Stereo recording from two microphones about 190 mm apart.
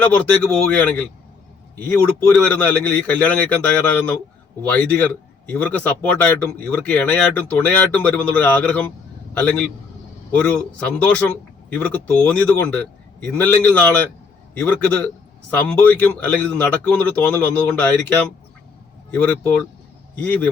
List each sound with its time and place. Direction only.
0.0 s a man's voice: 5° left (ahead or behind)
4.8 s a man's voice: 5° left (ahead or behind)